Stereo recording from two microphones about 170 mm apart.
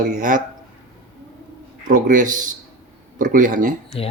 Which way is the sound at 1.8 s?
50° right (ahead or behind).